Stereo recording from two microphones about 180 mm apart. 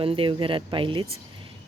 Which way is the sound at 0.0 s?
30° right (ahead or behind).